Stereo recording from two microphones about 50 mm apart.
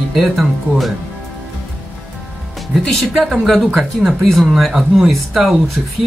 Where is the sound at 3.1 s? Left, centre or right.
Centre.